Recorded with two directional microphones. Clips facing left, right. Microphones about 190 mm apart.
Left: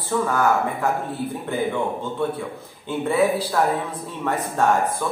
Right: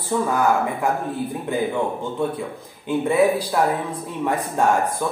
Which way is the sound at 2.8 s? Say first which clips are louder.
Right 2 dB; 15° right (ahead or behind).